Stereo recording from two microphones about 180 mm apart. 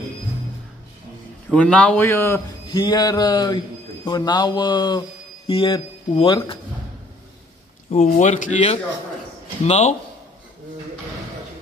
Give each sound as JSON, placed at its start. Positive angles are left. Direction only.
{"t": 1.5, "sound": "a man's voice", "side_deg": 5}
{"t": 2.7, "sound": "speech", "side_deg": 25}
{"t": 7.9, "sound": "speech", "side_deg": 35}